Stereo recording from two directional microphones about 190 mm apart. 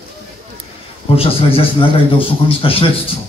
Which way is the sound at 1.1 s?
30° left (ahead or behind).